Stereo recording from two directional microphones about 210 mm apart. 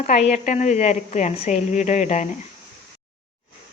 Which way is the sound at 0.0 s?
30° left (ahead or behind).